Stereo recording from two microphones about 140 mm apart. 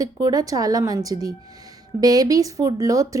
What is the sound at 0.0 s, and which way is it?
Speech, 25° right (ahead or behind).